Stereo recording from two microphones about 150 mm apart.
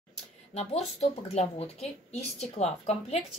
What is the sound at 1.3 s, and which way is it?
A woman's voice, 45° left (ahead or behind).